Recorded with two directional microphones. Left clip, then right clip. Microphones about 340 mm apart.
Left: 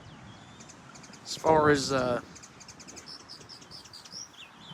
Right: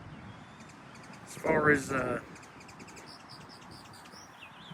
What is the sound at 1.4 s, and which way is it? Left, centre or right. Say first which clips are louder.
Speech: left 4 dB; centre.